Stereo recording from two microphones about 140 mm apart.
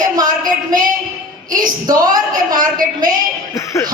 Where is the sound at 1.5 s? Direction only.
75° right (ahead or behind).